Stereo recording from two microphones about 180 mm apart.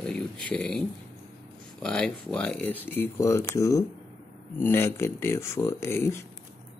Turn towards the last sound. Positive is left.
turn(degrees=15)  # may be behind; listen again after turning